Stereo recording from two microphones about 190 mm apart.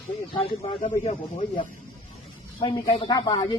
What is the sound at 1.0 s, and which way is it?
Speech, 30° left (ahead or behind).